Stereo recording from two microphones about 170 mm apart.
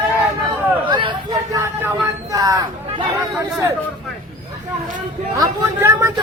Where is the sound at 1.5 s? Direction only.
15° right (ahead or behind).